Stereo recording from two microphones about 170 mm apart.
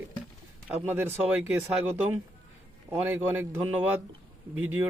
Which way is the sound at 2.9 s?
15° right (ahead or behind).